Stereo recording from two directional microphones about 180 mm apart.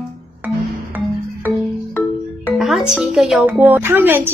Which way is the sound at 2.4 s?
Centre (ahead or behind).